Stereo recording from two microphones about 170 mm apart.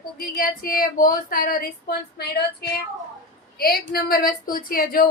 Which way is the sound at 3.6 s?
60° left (ahead or behind).